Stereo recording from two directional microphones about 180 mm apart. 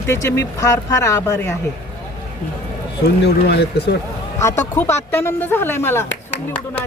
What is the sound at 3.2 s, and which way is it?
Speech, 65° left (ahead or behind).